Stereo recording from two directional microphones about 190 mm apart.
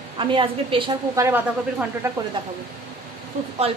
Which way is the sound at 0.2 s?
25° right (ahead or behind).